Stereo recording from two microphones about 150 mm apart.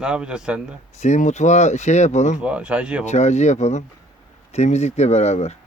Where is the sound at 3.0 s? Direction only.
50° left (ahead or behind).